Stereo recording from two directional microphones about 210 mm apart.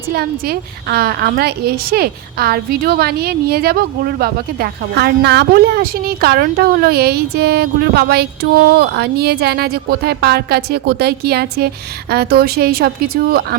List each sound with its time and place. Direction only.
0.1 s a woman's voice: 45° right (ahead or behind)